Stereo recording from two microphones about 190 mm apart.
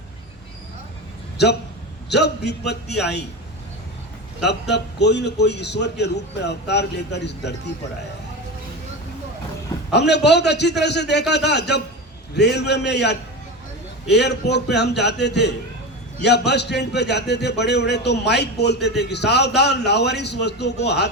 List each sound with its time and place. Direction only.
2.0 s a man's voice: 65° left (ahead or behind)
4.7 s a man's voice: 65° left (ahead or behind)
9.9 s a man's voice: 65° left (ahead or behind)